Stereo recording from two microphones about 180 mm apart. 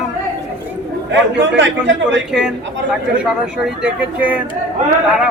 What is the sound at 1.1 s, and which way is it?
A man's voice, 80° right.